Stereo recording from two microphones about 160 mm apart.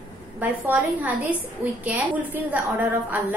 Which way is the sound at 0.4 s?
10° right (ahead or behind).